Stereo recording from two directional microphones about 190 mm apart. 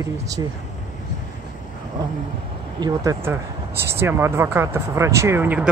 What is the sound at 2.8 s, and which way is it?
Speech, 20° right (ahead or behind).